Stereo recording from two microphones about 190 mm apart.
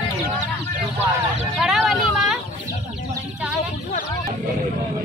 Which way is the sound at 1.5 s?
Centre (ahead or behind).